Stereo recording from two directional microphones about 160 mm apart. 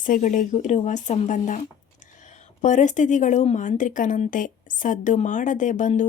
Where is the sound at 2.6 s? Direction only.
50° left (ahead or behind).